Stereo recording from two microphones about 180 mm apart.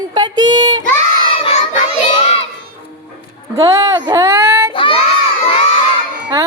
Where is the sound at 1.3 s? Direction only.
35° left (ahead or behind).